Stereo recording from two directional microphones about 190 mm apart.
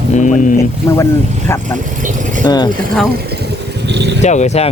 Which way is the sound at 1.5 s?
10° left (ahead or behind).